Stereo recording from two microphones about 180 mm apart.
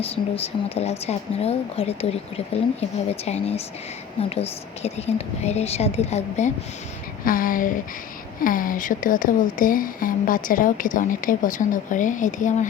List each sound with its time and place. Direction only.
0.0 s a woman's voice: 35° left (ahead or behind)
3.2 s a woman's voice: 35° left (ahead or behind)
7.3 s a woman's voice: 50° left (ahead or behind)